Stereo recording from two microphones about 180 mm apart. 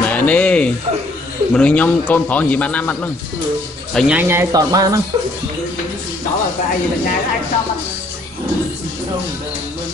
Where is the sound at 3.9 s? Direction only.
5° right (ahead or behind).